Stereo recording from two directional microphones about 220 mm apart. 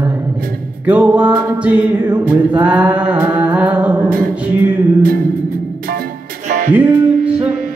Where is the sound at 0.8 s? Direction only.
5° right (ahead or behind).